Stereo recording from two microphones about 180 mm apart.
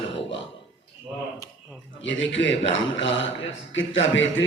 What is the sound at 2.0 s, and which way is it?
A man's voice, 90° left.